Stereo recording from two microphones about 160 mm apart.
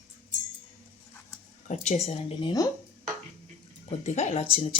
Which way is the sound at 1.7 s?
45° left (ahead or behind).